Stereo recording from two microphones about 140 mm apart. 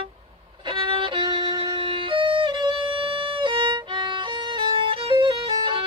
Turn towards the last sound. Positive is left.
turn(degrees=-35)  # may be behind; listen again after turning